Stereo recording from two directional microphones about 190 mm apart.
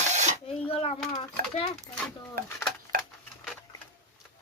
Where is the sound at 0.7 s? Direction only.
30° left (ahead or behind).